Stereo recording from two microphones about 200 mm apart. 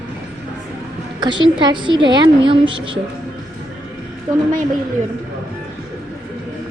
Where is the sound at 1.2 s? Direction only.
25° right (ahead or behind).